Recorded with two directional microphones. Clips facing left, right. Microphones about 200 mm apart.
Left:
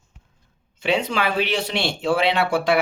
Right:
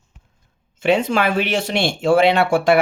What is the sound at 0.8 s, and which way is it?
Speech, 50° right (ahead or behind).